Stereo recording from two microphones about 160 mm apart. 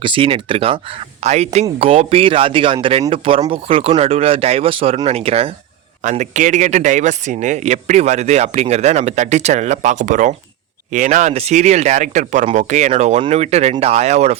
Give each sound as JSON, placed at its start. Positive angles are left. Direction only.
{"t": 0.0, "sound": "speech", "side_deg": -35}
{"t": 6.0, "sound": "speech", "side_deg": -50}